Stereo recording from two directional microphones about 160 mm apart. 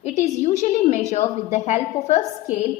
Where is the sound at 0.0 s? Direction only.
45° left (ahead or behind).